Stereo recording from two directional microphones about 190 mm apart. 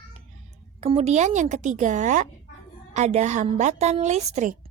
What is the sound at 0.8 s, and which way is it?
A woman's voice, 30° right (ahead or behind).